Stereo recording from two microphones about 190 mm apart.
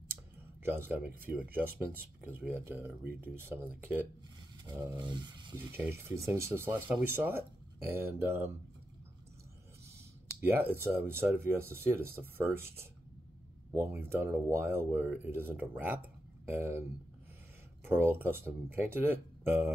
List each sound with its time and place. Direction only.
0.7 s speech: 10° right (ahead or behind)
4.6 s a sound: 20° right (ahead or behind)
5.6 s speech: 10° right (ahead or behind)
10.4 s speech: 10° right (ahead or behind)
17.8 s speech: 10° right (ahead or behind)